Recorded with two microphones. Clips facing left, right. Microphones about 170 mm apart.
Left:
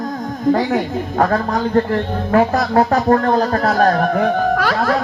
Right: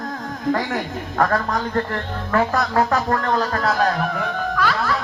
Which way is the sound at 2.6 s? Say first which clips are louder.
Left 4 dB; 35° left (ahead or behind).